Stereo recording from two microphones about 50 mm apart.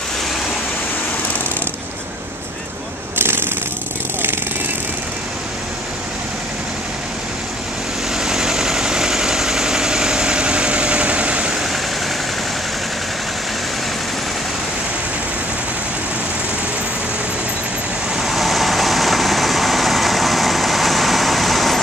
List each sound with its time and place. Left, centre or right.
3.2 s a sound: right
8.2 s engine: centre
18.1 s vehicle: centre